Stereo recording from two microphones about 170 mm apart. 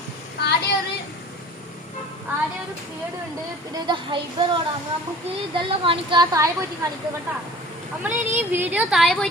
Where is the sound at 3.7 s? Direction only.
25° right (ahead or behind).